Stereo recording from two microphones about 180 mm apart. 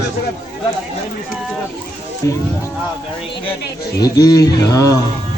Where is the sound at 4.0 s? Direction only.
20° left (ahead or behind).